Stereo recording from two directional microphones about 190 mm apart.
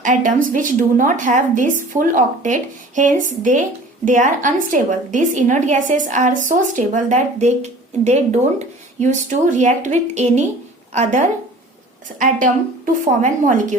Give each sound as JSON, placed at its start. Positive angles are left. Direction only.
{"t": 0.0, "sound": "a woman's voice", "side_deg": -40}
{"t": 12.2, "sound": "speech", "side_deg": -45}